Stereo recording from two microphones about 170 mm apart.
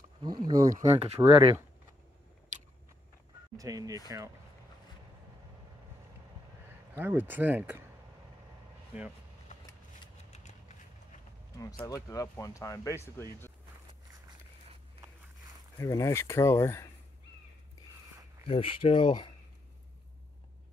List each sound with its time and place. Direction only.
0.2 s speech: 25° right (ahead or behind)
0.9 s speech: 35° right (ahead or behind)
3.5 s speech: 20° right (ahead or behind)
7.0 s speech: 10° right (ahead or behind)
8.9 s speech: 5° right (ahead or behind)
9.5 s vehicle: 45° left (ahead or behind)
10.3 s a sound: 45° left (ahead or behind)
11.8 s speech: 20° left (ahead or behind)
15.8 s speech: 15° left (ahead or behind)
18.5 s speech: 30° left (ahead or behind)